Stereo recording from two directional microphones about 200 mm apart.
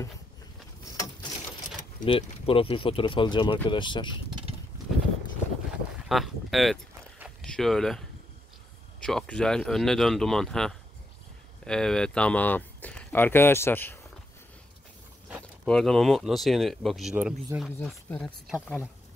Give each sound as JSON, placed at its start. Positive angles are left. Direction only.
{"t": 0.9, "sound": "a sound", "side_deg": 20}
{"t": 2.0, "sound": "speech", "side_deg": 25}
{"t": 6.0, "sound": "speech", "side_deg": 0}
{"t": 9.0, "sound": "speech", "side_deg": 5}
{"t": 15.6, "sound": "speech", "side_deg": 0}
{"t": 17.6, "sound": "speech", "side_deg": 10}